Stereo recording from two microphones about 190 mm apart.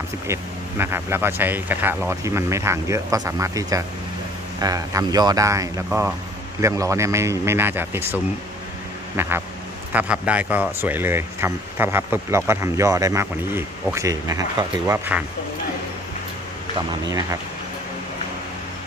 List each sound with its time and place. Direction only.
0.3 s speech: 15° right (ahead or behind)
9.1 s vehicle: 15° right (ahead or behind)
9.9 s speech: 5° right (ahead or behind)